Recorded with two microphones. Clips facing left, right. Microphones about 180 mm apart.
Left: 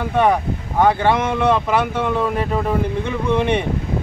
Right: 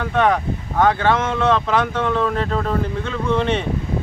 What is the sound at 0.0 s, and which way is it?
Speech, 10° left (ahead or behind).